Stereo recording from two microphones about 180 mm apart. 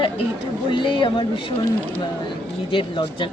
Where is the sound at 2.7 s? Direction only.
25° left (ahead or behind).